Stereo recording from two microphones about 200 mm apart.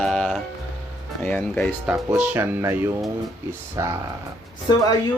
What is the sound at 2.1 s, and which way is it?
Speech, 10° right (ahead or behind).